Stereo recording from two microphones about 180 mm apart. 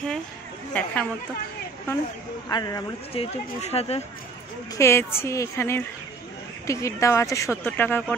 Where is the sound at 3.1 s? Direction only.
35° left (ahead or behind).